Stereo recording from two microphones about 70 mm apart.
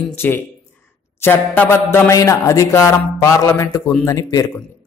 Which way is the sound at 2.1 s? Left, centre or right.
Left.